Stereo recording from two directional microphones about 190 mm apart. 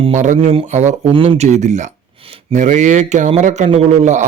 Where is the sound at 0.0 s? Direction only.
40° right (ahead or behind).